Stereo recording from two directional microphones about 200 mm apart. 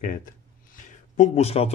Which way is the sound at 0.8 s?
35° left (ahead or behind).